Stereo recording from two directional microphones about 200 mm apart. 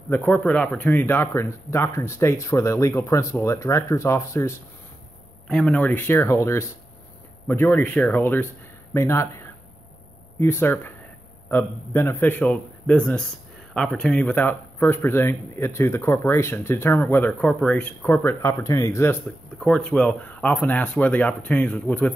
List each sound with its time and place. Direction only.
0.1 s speech: 10° left (ahead or behind)
10.4 s speech: 10° left (ahead or behind)
19.6 s speech: 5° left (ahead or behind)